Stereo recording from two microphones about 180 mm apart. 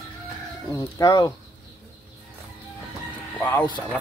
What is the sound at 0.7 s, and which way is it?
Speech, 20° left (ahead or behind).